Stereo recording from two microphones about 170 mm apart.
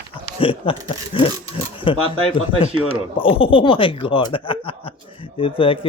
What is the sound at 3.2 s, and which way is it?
Speech, 35° left (ahead or behind).